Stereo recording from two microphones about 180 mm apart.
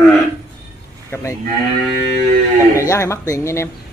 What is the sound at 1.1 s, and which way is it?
Cattle, 15° left (ahead or behind).